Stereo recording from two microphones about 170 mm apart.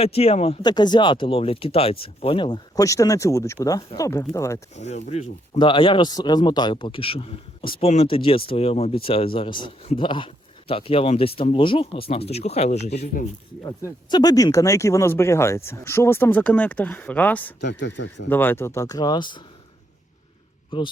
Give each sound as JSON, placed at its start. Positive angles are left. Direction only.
{"t": 0.0, "sound": "speech", "side_deg": 35}
{"t": 0.6, "sound": "speech", "side_deg": 25}
{"t": 4.7, "sound": "speech", "side_deg": 40}
{"t": 5.5, "sound": "speech", "side_deg": 30}
{"t": 13.7, "sound": "speech", "side_deg": 20}
{"t": 17.6, "sound": "speech", "side_deg": 90}
{"t": 18.3, "sound": "speech", "side_deg": 10}
{"t": 20.7, "sound": "a man's voice", "side_deg": 30}